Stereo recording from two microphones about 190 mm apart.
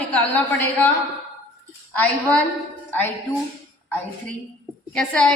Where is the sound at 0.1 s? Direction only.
10° left (ahead or behind).